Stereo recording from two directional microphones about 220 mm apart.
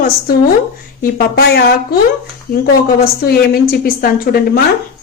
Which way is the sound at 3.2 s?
45° left (ahead or behind).